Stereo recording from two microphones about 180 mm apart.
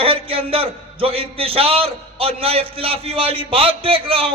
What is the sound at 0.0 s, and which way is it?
A man's voice, 30° right (ahead or behind).